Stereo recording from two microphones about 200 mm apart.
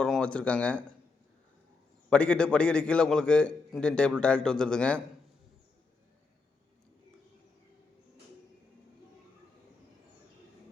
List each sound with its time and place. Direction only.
0.0 s a man's voice: 5° left (ahead or behind)
2.0 s a man's voice: 5° left (ahead or behind)